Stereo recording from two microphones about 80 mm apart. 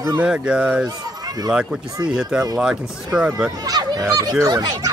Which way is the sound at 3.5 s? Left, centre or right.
Right.